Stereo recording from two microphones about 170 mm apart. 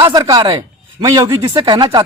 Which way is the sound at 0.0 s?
25° right (ahead or behind).